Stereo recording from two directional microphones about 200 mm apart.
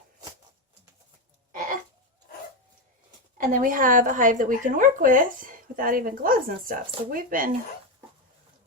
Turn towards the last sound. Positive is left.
turn(degrees=-45)  # may be behind; listen again after turning